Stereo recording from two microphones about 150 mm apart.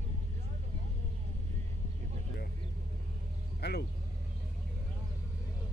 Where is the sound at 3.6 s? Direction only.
90° left.